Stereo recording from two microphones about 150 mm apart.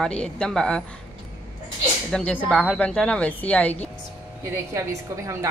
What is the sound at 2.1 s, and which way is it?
A woman's voice, 5° left (ahead or behind).